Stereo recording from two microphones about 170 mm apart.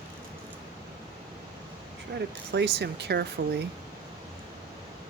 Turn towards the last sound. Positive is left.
turn(degrees=-75)  # may be behind; listen again after turning